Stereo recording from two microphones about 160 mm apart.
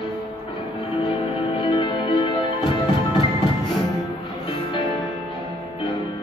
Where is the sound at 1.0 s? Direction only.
30° left (ahead or behind).